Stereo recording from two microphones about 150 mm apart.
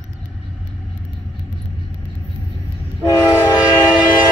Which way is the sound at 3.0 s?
20° left (ahead or behind).